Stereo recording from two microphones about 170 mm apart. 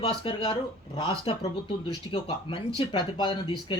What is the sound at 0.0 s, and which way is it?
Speech, 35° left (ahead or behind).